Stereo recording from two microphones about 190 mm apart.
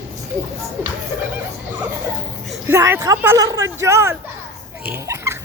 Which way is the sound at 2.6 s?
10° right (ahead or behind).